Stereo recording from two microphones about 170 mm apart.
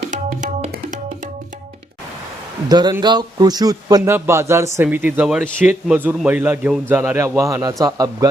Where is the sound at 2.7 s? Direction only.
25° right (ahead or behind).